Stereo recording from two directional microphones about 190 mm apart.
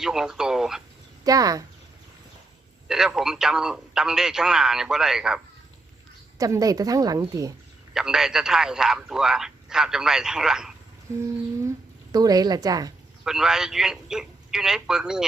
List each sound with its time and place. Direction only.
0.0 s speech: 5° right (ahead or behind)
1.2 s speech: 20° right (ahead or behind)
2.8 s speech: 5° right (ahead or behind)
6.4 s a woman's voice: 20° right (ahead or behind)
7.9 s speech: 5° right (ahead or behind)
11.1 s humming: 15° right (ahead or behind)
12.1 s a woman's voice: 20° right (ahead or behind)
13.2 s speech: 5° right (ahead or behind)